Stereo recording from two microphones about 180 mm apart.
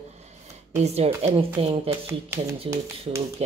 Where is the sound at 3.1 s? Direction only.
35° right (ahead or behind).